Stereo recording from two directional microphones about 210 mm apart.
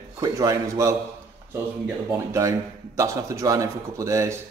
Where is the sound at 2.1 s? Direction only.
15° right (ahead or behind).